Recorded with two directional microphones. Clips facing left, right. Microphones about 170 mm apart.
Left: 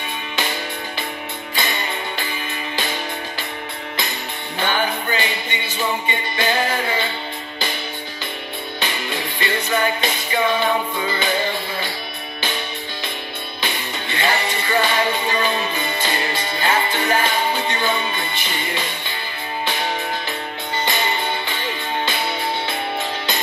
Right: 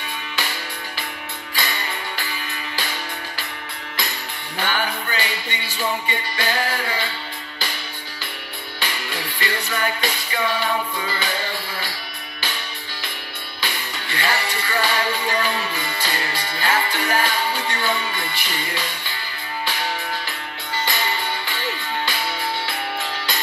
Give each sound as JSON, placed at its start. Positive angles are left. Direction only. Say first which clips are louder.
{"t": 1.5, "sound": "music", "louder": "left 3 dB", "side_deg": 20}
{"t": 4.6, "sound": "music", "louder": "left 3 dB", "side_deg": 20}
{"t": 8.7, "sound": "music", "louder": "left 3 dB", "side_deg": 20}
{"t": 13.6, "sound": "music", "louder": "left 3 dB", "side_deg": 20}